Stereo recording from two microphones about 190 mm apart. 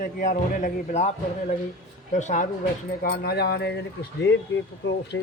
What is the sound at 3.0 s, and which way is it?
A man's voice, 55° left (ahead or behind).